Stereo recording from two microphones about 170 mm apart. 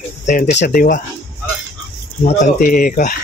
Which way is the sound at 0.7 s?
55° left (ahead or behind).